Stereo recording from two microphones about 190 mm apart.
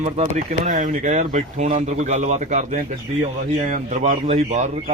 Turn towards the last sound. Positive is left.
turn(degrees=-40)  # may be behind; listen again after turning